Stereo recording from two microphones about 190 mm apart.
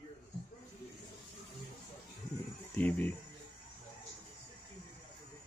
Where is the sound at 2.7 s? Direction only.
10° left (ahead or behind).